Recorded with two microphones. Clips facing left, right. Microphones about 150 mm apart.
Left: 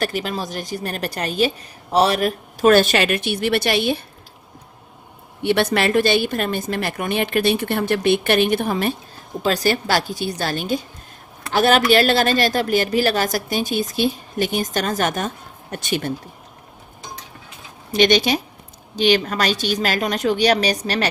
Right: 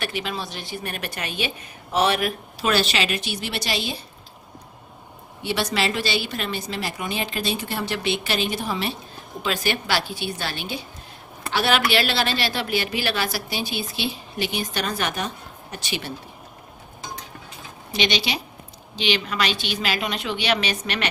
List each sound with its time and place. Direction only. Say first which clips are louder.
0.0 s a woman's voice: left 5 dB; 40° left (ahead or behind); by 4.0 s 60° left (ahead or behind)
5.4 s speech: left 6 dB; 55° left (ahead or behind)
9.4 s a woman's voice: left 6 dB; 40° left (ahead or behind)
17.9 s a woman's voice: left 8 dB; 50° left (ahead or behind)